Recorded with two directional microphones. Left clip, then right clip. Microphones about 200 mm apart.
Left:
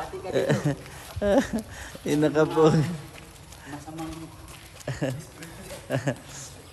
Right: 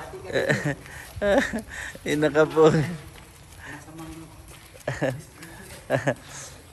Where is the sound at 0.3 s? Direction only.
15° left (ahead or behind).